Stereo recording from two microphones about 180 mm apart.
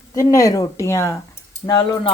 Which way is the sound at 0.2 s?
20° left (ahead or behind).